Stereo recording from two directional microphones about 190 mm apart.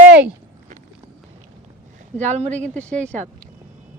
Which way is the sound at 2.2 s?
35° right (ahead or behind).